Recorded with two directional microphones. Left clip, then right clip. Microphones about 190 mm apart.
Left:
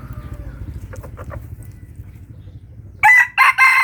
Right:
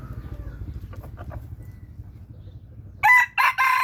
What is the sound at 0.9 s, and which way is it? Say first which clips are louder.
Chicken: left 8 dB; 20° right (ahead or behind).